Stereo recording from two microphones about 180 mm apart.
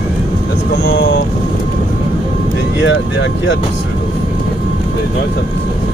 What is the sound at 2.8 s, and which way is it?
Speech, 85° left.